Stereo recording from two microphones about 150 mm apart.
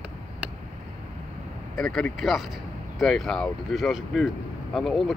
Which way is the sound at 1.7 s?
5° left (ahead or behind).